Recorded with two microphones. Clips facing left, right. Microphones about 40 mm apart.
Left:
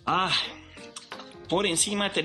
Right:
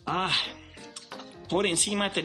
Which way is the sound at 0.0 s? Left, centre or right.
Left.